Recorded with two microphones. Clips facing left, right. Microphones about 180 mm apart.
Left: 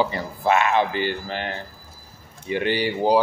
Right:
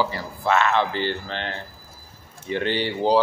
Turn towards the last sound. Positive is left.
turn(degrees=10)  # may be behind; listen again after turning